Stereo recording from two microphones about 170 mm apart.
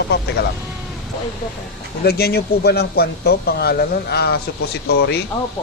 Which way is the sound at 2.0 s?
65° left (ahead or behind).